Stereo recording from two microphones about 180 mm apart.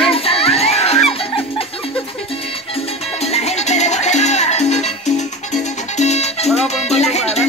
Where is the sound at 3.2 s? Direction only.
35° left (ahead or behind).